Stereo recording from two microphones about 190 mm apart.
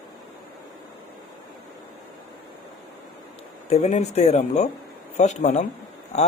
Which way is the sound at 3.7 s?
35° left (ahead or behind).